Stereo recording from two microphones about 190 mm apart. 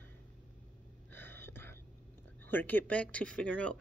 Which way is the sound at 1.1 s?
10° left (ahead or behind).